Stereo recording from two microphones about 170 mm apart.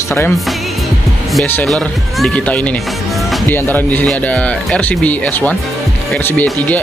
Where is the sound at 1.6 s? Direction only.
Centre (ahead or behind).